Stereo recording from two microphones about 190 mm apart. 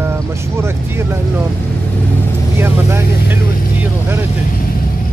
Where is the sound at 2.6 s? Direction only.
10° right (ahead or behind).